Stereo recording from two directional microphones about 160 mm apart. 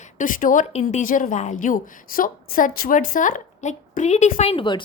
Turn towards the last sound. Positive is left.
turn(degrees=30)  # may be behind; listen again after turning